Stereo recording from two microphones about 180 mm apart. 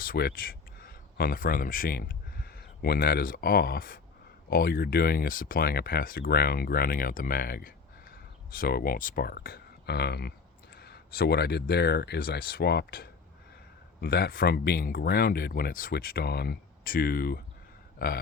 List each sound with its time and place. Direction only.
0.0 s speech: 55° left (ahead or behind)